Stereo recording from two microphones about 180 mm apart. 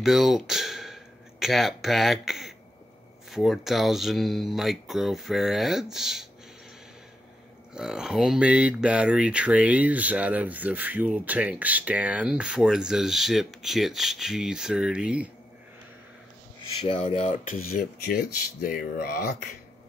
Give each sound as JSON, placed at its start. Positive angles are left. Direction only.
{"t": 0.0, "sound": "speech", "side_deg": 0}
{"t": 7.7, "sound": "speech", "side_deg": -5}
{"t": 16.8, "sound": "speech", "side_deg": 35}